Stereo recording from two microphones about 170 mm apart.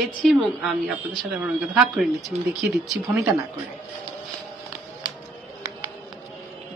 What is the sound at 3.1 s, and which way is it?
Speech, 15° right (ahead or behind).